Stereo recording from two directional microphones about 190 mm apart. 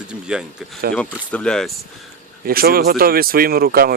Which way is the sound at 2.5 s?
50° right (ahead or behind).